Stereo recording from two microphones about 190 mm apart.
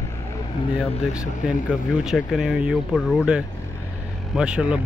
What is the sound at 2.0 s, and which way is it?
Speech, centre (ahead or behind).